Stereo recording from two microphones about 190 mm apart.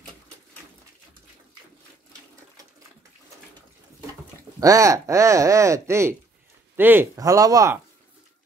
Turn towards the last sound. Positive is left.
turn(degrees=-15)  # may be behind; listen again after turning